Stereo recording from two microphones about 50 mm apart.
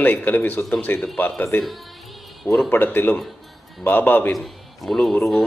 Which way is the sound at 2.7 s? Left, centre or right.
Left.